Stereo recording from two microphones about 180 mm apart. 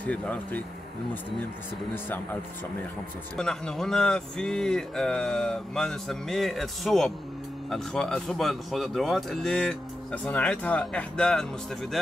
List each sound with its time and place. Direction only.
0.0 s speech: 10° left (ahead or behind)
3.3 s speech: 5° left (ahead or behind)